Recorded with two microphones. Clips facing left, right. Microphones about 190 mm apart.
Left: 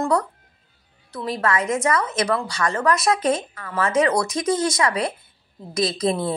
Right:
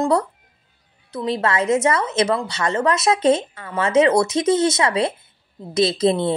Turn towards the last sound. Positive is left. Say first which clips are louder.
# right 4 dB
turn(degrees=-25)  # may be behind; listen again after turning